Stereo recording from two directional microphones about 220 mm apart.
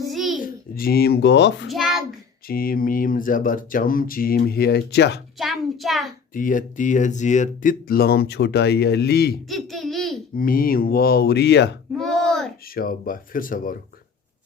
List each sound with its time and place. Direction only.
0.0 s child singing: centre (ahead or behind)
0.3 s a child's voice: 40° left (ahead or behind)
1.7 s a child's voice: centre (ahead or behind)
2.5 s speech: 40° left (ahead or behind)
5.4 s a child's voice: centre (ahead or behind)
6.3 s speech: 35° left (ahead or behind)
9.5 s a child's voice: centre (ahead or behind)
10.3 s speech: 40° left (ahead or behind)
11.9 s a child's voice: centre (ahead or behind)
12.6 s speech: 40° left (ahead or behind)